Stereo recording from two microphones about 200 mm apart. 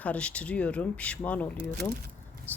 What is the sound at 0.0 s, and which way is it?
Speech, 5° left (ahead or behind).